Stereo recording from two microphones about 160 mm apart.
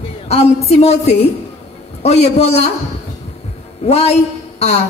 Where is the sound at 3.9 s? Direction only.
40° left (ahead or behind).